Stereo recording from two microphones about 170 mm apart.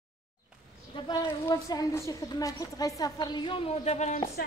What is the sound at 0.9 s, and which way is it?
A woman's voice, 25° left (ahead or behind).